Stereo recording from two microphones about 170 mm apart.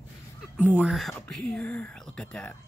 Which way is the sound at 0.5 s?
10° right (ahead or behind).